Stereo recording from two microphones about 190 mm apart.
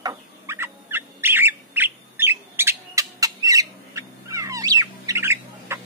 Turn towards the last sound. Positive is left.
turn(degrees=-15)  # may be behind; listen again after turning